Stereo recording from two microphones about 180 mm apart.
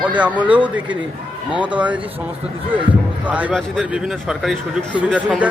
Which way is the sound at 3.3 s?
10° right (ahead or behind).